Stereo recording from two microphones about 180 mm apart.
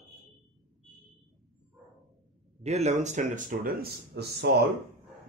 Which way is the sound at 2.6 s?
35° right (ahead or behind).